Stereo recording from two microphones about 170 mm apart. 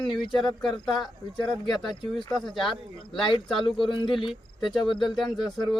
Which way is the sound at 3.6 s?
30° left (ahead or behind).